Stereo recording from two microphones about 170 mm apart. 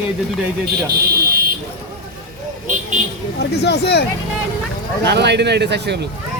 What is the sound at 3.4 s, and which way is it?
Speech, 75° left (ahead or behind).